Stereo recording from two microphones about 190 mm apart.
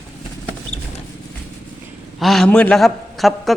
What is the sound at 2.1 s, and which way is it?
A man's voice, centre (ahead or behind).